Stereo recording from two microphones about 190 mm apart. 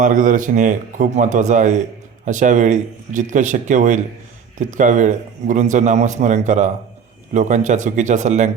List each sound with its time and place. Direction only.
0.0 s a man's voice: 45° right (ahead or behind)